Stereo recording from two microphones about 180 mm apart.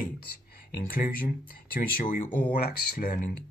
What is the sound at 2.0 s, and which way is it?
Speech, 50° left (ahead or behind).